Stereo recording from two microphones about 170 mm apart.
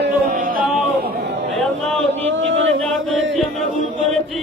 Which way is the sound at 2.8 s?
Centre (ahead or behind).